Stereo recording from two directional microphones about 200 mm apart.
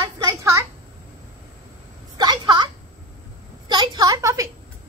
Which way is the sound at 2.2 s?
20° right (ahead or behind).